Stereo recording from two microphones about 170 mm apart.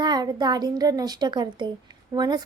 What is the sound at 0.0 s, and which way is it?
A child's voice, 25° right (ahead or behind).